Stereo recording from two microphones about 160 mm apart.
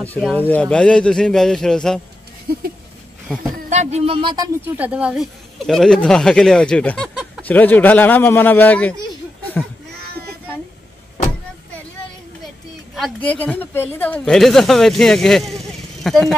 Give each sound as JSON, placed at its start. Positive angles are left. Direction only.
{"t": 0.4, "sound": "speech", "side_deg": 10}
{"t": 3.7, "sound": "speech", "side_deg": -45}
{"t": 4.7, "sound": "speech", "side_deg": -10}
{"t": 5.7, "sound": "a man's voice", "side_deg": 5}
{"t": 12.9, "sound": "speech", "side_deg": 5}